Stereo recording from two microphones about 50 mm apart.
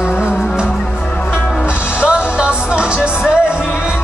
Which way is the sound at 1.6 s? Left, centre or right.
Left.